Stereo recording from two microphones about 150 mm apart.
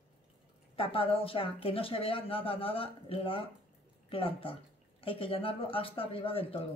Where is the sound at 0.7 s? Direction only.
35° left (ahead or behind).